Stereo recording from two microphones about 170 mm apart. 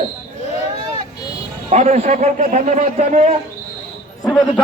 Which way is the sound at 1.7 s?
40° right (ahead or behind).